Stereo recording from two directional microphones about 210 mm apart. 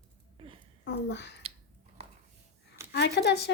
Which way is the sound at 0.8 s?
55° left (ahead or behind).